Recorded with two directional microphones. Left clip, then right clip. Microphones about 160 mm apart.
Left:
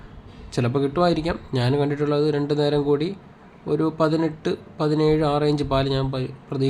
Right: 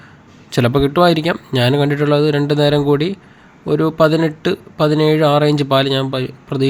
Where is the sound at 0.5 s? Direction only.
25° right (ahead or behind).